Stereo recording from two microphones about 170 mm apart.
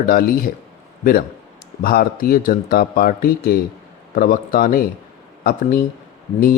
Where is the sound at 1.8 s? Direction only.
60° left (ahead or behind).